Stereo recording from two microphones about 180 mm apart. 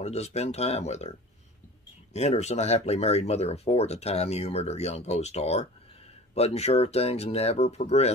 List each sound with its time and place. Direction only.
0.0 s speech: 35° left (ahead or behind)
2.1 s speech: 35° left (ahead or behind)